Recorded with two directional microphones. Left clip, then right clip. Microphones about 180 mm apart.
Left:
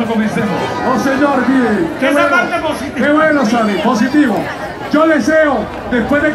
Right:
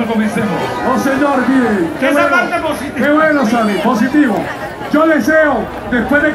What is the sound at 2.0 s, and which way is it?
A man's voice, 45° left (ahead or behind).